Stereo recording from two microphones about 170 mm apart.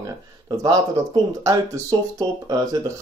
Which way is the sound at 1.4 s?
20° right (ahead or behind).